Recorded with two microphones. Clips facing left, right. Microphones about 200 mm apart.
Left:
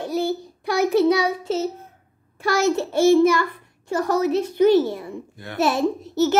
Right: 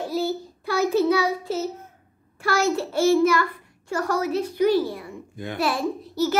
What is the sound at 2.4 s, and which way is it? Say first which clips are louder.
A child's voice: left 2 dB; 20° left (ahead or behind).